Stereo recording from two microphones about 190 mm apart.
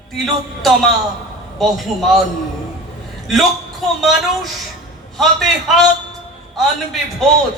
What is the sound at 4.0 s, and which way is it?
A man's voice, centre (ahead or behind).